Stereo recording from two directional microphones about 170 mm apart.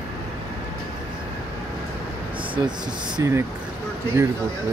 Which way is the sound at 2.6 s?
25° right (ahead or behind).